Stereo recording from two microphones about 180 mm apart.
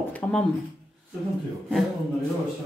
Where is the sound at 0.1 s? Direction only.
5° left (ahead or behind).